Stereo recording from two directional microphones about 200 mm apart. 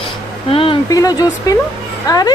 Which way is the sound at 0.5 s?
20° left (ahead or behind).